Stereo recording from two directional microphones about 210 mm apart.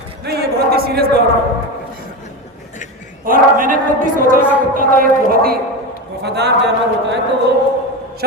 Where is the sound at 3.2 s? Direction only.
40° right (ahead or behind).